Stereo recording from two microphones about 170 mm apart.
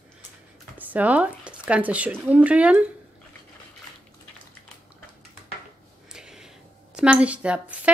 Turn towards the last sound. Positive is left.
turn(degrees=-5)  # may be behind; listen again after turning